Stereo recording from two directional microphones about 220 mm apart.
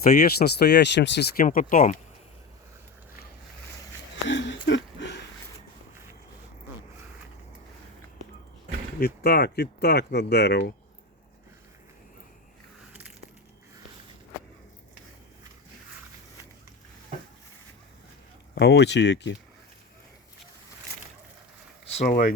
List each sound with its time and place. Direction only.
0.3 s speech: 45° left (ahead or behind)
4.3 s a sound: 55° left (ahead or behind)
9.0 s speech: 45° left (ahead or behind)
18.5 s speech: 50° left (ahead or behind)
21.9 s speech: 35° left (ahead or behind)